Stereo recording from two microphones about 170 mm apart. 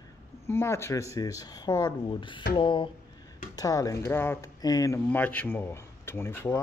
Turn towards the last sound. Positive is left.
turn(degrees=15)  # may be behind; listen again after turning